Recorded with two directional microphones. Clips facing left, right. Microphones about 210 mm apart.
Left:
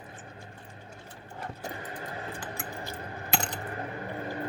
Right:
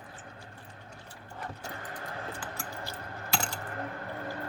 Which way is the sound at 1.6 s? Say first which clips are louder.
Left 3 dB; 20° left (ahead or behind).